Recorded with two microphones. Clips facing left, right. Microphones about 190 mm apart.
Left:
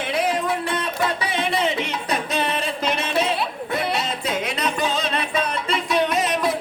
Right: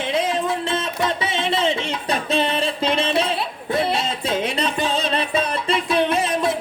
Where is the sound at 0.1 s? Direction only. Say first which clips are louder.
Even; 25° right (ahead or behind).